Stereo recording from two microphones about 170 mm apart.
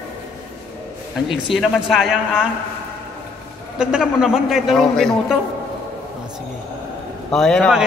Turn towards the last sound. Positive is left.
turn(degrees=5)  # may be behind; listen again after turning